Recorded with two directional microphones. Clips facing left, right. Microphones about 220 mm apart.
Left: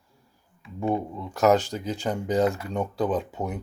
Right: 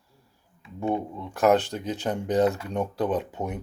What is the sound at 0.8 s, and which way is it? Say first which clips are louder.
Speech: left 1 dB; centre (ahead or behind).